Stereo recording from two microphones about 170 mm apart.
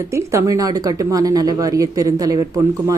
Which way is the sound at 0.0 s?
15° right (ahead or behind).